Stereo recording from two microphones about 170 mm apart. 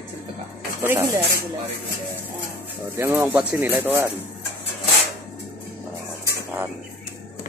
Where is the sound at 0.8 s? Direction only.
10° right (ahead or behind).